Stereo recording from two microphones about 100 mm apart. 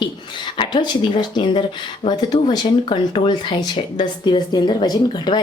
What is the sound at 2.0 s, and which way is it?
Speech, 50° left (ahead or behind).